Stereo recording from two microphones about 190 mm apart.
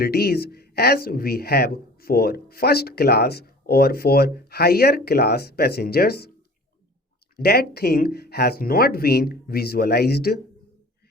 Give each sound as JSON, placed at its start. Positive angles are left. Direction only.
{"t": 0.0, "sound": "speech", "side_deg": 55}
{"t": 7.3, "sound": "speech", "side_deg": 55}